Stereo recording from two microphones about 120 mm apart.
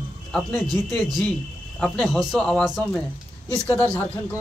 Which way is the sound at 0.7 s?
35° right (ahead or behind).